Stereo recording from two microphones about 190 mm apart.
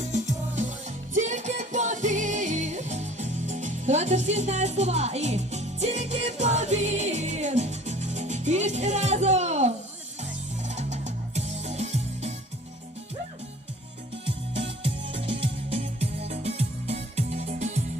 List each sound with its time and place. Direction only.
0.0 s music: 40° right (ahead or behind)
14.3 s music: 30° right (ahead or behind)